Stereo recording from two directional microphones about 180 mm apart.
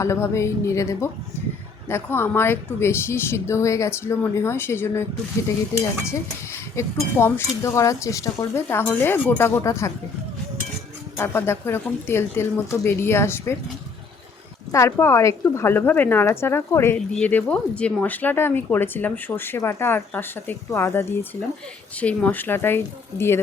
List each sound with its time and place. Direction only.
0.0 s a woman's voice: 15° left (ahead or behind)
6.1 s a woman's voice: 15° left (ahead or behind)
11.2 s a woman's voice: 15° left (ahead or behind)
14.7 s a woman's voice: 15° left (ahead or behind)